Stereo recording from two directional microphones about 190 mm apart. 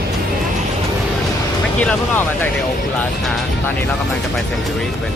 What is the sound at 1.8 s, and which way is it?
Vehicle, 10° left (ahead or behind).